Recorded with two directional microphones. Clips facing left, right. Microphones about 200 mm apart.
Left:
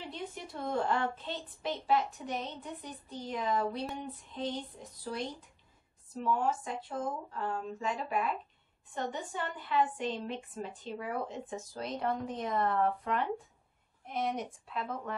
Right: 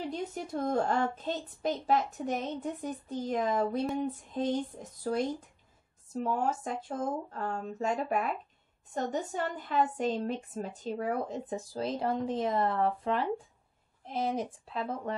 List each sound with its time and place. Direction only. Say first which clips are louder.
0.1 s a woman's voice: right 7 dB; 45° right (ahead or behind)
6.2 s a woman's voice: even; 45° right (ahead or behind)